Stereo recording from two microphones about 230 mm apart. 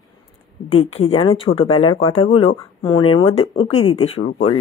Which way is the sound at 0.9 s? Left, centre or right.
Left.